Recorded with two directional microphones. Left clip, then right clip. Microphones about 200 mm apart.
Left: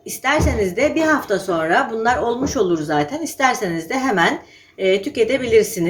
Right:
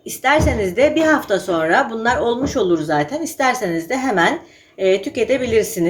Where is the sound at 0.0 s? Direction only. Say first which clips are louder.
Right 3 dB; centre (ahead or behind).